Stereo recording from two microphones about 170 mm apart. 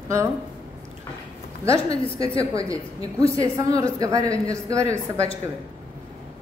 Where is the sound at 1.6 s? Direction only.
20° right (ahead or behind).